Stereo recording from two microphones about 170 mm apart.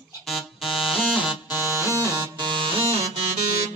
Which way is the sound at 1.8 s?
15° right (ahead or behind).